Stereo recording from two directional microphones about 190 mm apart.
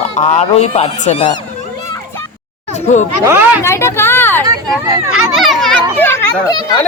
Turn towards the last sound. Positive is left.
turn(degrees=15)  # may be behind; listen again after turning